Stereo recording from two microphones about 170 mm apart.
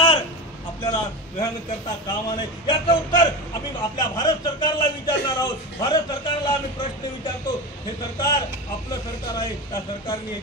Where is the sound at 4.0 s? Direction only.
25° left (ahead or behind).